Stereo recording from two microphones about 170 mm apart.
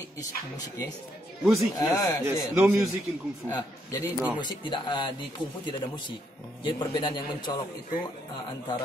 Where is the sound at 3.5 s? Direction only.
20° left (ahead or behind).